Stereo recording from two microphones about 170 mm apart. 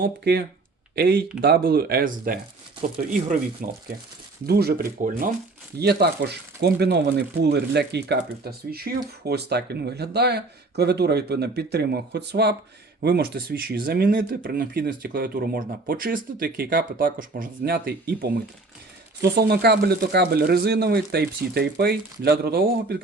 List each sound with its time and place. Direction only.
0.0 s speech: 65° right (ahead or behind)
4.4 s speech: 65° right (ahead or behind)
5.8 s speech: 75° right (ahead or behind)